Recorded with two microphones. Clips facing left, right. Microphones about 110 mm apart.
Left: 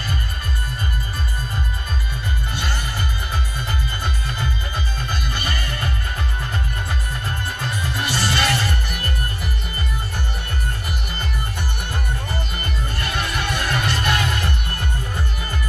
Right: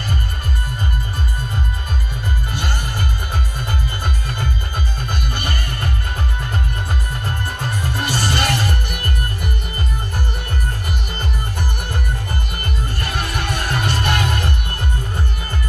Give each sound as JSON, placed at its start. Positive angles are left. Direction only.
{"t": 2.5, "sound": "music", "side_deg": -45}
{"t": 5.2, "sound": "music", "side_deg": -45}
{"t": 7.8, "sound": "music", "side_deg": -45}
{"t": 13.2, "sound": "music", "side_deg": -45}